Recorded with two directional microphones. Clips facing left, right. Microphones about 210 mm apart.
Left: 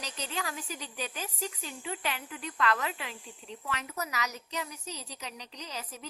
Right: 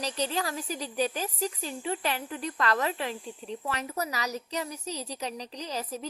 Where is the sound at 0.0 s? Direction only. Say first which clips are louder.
Right 7 dB; 35° right (ahead or behind).